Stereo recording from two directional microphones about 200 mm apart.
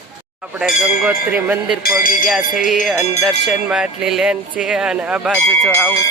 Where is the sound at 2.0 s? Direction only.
45° left (ahead or behind).